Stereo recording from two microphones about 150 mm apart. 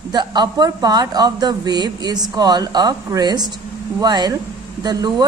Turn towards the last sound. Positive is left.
turn(degrees=-25)  # may be behind; listen again after turning